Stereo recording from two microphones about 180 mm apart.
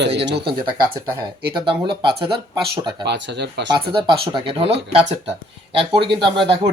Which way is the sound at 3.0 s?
70° right (ahead or behind).